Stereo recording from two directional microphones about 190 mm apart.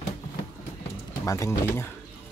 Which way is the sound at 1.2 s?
15° left (ahead or behind).